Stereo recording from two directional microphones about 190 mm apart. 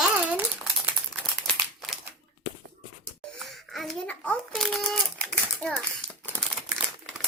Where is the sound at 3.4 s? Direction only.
Centre (ahead or behind).